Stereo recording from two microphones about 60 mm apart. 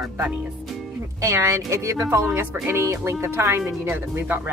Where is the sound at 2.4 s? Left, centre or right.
Right.